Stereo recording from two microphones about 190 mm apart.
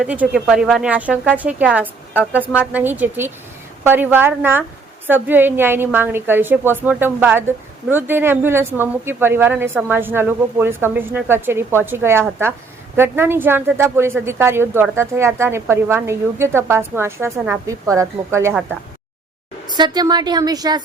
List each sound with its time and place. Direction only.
0.0 s a woman's voice: 5° right (ahead or behind)
19.7 s speech: 20° right (ahead or behind)